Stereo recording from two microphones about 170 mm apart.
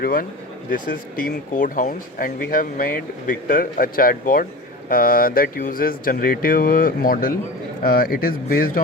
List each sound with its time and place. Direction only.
0.0 s speech: 55° left (ahead or behind)